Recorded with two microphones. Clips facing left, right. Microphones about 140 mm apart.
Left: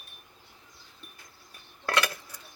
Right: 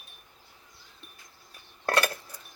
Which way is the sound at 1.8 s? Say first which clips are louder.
Right 2 dB; 40° right (ahead or behind).